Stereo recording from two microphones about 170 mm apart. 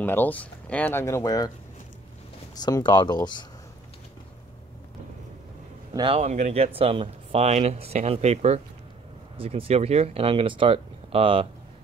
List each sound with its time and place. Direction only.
0.0 s speech: 10° left (ahead or behind)
2.6 s speech: 25° left (ahead or behind)
5.9 s speech: 30° right (ahead or behind)
6.2 s speech: 45° right (ahead or behind)